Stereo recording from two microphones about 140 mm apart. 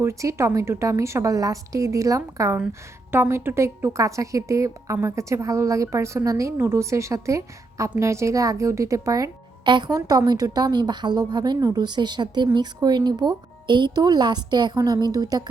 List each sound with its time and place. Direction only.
0.0 s a woman's voice: 20° right (ahead or behind)